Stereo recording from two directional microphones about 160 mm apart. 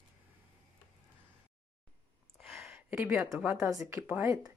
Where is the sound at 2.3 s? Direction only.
Centre (ahead or behind).